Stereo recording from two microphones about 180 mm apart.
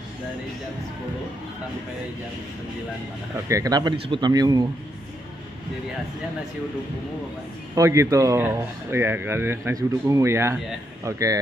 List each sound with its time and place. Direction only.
3.4 s speech: 20° right (ahead or behind)
7.7 s speech: 15° right (ahead or behind)